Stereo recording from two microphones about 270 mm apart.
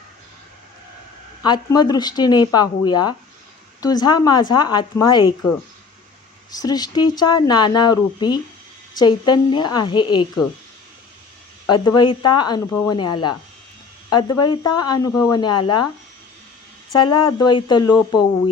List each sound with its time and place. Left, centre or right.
1.4 s speech: centre
6.5 s speech: centre
11.6 s speech: centre
16.9 s speech: centre